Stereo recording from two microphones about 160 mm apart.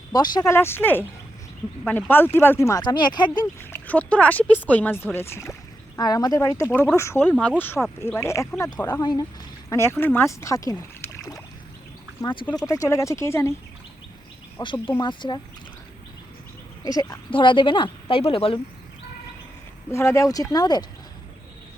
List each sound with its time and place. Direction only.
0.1 s speech: 25° left (ahead or behind)
3.6 s speech: 10° left (ahead or behind)
12.2 s speech: 30° left (ahead or behind)
12.6 s speech: 20° left (ahead or behind)
14.6 s speech: 30° left (ahead or behind)
16.8 s speech: 25° left (ahead or behind)
19.9 s speech: 20° left (ahead or behind)